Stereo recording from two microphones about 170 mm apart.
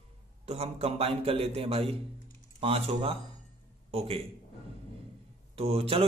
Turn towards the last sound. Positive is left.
turn(degrees=-35)  # may be behind; listen again after turning